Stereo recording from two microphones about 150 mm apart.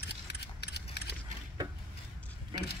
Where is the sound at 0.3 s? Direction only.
90° left.